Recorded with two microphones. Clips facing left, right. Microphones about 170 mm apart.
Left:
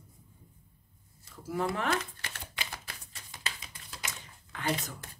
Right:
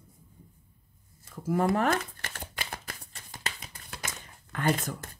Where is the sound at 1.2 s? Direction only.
50° right (ahead or behind).